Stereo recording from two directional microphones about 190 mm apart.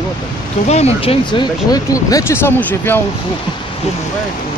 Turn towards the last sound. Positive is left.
turn(degrees=10)  # may be behind; listen again after turning